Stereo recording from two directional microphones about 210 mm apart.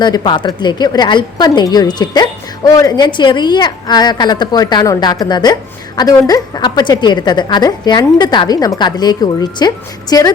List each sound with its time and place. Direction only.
0.0 s a woman's voice: 20° left (ahead or behind)